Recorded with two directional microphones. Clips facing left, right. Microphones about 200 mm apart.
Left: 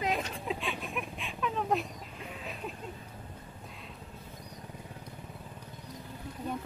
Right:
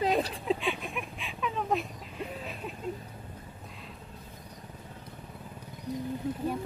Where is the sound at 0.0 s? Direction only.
35° right (ahead or behind).